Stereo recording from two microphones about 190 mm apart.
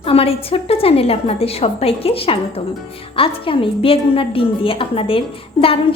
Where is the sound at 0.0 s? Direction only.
30° left (ahead or behind).